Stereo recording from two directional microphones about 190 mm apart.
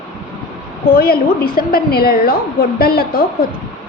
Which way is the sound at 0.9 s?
50° left (ahead or behind).